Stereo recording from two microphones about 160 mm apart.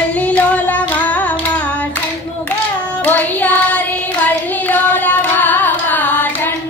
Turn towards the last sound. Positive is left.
turn(degrees=10)  # may be behind; listen again after turning